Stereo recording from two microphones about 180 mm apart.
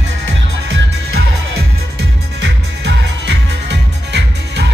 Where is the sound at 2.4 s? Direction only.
75° right (ahead or behind).